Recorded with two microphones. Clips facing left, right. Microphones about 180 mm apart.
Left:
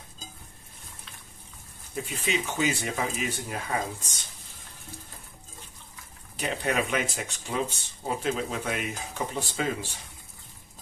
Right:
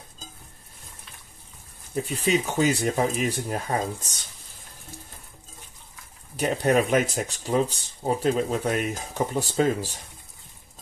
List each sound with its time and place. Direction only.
2.0 s speech: 40° right (ahead or behind)
6.3 s speech: 40° right (ahead or behind)